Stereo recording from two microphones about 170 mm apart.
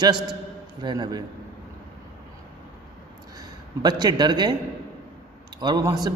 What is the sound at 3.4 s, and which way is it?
A man's voice, 25° right (ahead or behind).